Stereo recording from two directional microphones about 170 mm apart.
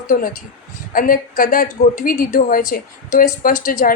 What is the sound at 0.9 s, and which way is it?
A woman's voice, 55° left (ahead or behind).